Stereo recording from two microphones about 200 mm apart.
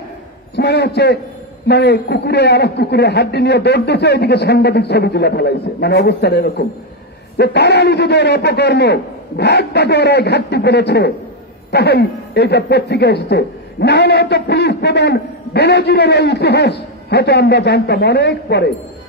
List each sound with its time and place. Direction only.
0.6 s speech: 55° left (ahead or behind)